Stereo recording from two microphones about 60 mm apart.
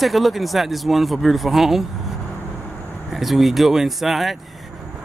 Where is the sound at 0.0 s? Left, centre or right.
Centre.